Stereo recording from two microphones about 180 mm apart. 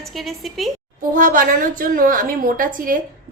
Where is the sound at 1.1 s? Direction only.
50° right (ahead or behind).